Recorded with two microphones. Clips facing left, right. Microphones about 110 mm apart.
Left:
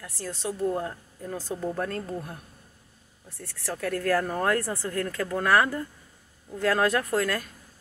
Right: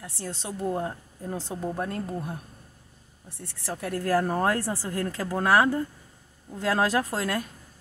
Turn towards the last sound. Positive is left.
turn(degrees=-20)  # may be behind; listen again after turning